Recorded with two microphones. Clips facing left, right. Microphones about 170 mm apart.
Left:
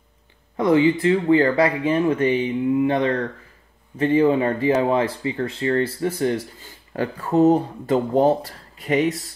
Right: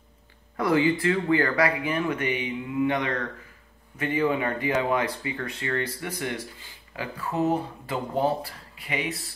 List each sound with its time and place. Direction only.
0.6 s speech: 20° left (ahead or behind)
7.0 s speech: 40° left (ahead or behind)